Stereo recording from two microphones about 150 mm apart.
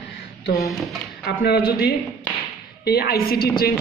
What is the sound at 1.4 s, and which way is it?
A woman's voice, 85° left.